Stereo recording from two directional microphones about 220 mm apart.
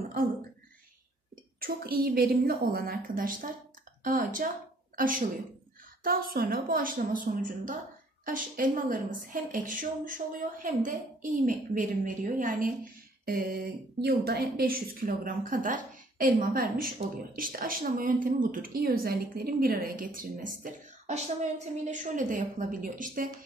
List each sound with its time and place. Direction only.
1.6 s a woman's voice: 45° right (ahead or behind)
13.2 s a sound: 45° right (ahead or behind)
14.0 s a woman's voice: 45° right (ahead or behind)